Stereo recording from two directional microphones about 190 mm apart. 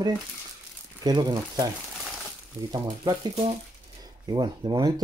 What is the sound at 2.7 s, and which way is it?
Speech, 20° right (ahead or behind).